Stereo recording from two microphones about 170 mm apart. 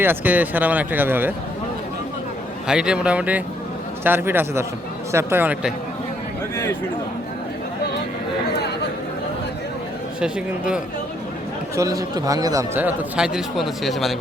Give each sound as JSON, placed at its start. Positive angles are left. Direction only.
{"t": 0.0, "sound": "a man's voice", "side_deg": -10}
{"t": 2.6, "sound": "a man's voice", "side_deg": -5}
{"t": 10.2, "sound": "speech", "side_deg": -5}
{"t": 11.8, "sound": "a man's voice", "side_deg": -20}